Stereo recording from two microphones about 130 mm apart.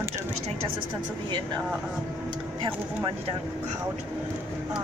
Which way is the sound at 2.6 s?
40° right (ahead or behind).